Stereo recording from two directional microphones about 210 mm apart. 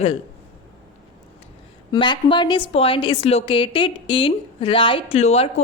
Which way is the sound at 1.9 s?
20° left (ahead or behind).